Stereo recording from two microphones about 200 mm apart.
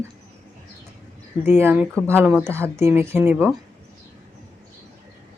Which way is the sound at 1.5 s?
10° right (ahead or behind).